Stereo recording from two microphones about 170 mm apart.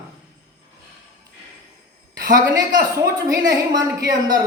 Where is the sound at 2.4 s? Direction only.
20° right (ahead or behind).